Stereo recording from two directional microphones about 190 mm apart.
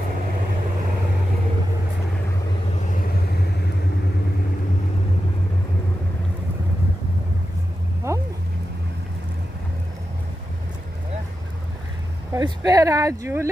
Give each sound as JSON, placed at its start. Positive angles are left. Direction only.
{"t": 2.8, "sound": "vehicle", "side_deg": 40}
{"t": 8.1, "sound": "a sound", "side_deg": -15}
{"t": 12.3, "sound": "speech", "side_deg": -20}